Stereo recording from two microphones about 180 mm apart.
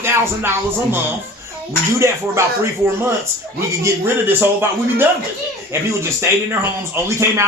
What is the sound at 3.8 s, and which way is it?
Speech, 10° right (ahead or behind).